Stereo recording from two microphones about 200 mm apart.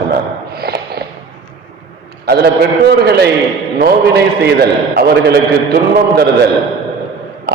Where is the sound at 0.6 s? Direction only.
50° right (ahead or behind).